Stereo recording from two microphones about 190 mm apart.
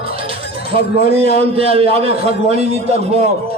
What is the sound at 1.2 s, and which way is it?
Speech, 30° right (ahead or behind).